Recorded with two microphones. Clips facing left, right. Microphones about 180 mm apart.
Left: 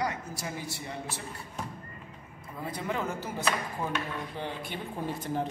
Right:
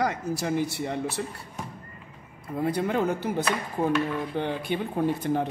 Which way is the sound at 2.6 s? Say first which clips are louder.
Right 8 dB; 70° right (ahead or behind).